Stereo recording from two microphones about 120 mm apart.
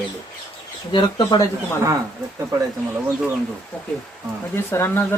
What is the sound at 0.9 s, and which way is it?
Speech, 40° left (ahead or behind).